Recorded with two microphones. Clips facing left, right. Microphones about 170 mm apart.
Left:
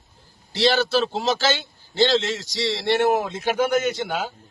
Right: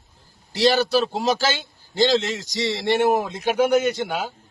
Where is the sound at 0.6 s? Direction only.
15° right (ahead or behind).